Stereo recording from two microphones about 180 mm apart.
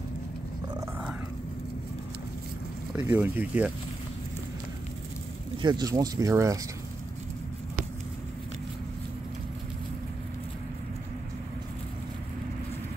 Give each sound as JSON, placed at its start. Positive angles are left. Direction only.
{"t": 0.7, "sound": "a sound", "side_deg": -10}
{"t": 3.1, "sound": "speech", "side_deg": -10}
{"t": 5.6, "sound": "speech", "side_deg": -25}